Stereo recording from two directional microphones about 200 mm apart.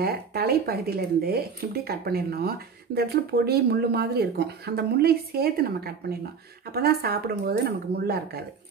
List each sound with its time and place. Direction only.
0.0 s speech: 50° right (ahead or behind)